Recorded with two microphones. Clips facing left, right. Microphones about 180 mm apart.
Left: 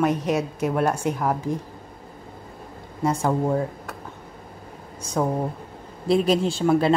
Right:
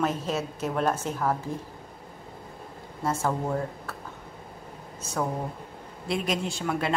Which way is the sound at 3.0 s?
15° left (ahead or behind).